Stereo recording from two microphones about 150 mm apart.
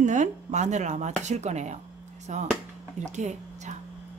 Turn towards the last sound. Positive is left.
turn(degrees=-50)  # may be behind; listen again after turning